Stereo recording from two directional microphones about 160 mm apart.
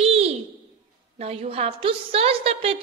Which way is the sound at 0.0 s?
40° right (ahead or behind).